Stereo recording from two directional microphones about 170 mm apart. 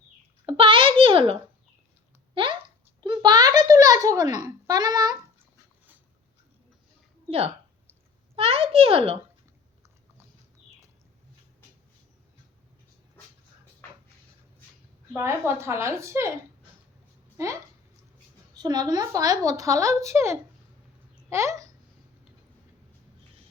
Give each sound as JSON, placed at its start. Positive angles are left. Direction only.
{"t": 0.4, "sound": "a child's voice", "side_deg": -30}
{"t": 7.3, "sound": "a child's voice", "side_deg": -35}
{"t": 15.1, "sound": "a woman's voice", "side_deg": -15}
{"t": 17.3, "sound": "a woman's voice", "side_deg": -15}